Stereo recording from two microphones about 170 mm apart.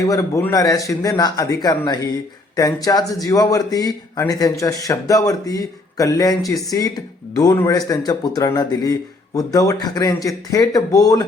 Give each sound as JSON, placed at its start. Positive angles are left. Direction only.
{"t": 0.0, "sound": "speech", "side_deg": 20}